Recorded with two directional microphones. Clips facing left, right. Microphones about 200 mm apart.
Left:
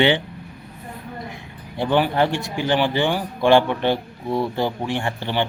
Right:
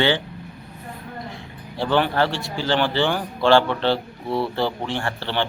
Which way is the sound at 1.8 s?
15° left (ahead or behind).